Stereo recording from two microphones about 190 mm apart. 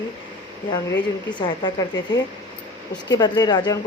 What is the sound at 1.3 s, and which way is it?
Speech, 25° left (ahead or behind).